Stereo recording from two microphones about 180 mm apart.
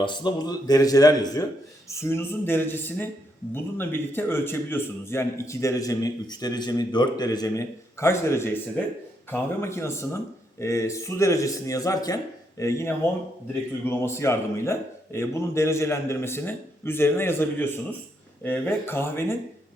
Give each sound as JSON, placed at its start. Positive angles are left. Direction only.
{"t": 0.0, "sound": "a man's voice", "side_deg": 25}